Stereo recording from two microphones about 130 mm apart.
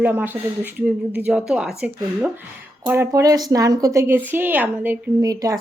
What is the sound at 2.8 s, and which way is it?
A woman's voice, 20° right (ahead or behind).